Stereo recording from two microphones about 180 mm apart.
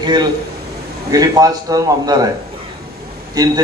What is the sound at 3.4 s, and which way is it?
Speech, 20° right (ahead or behind).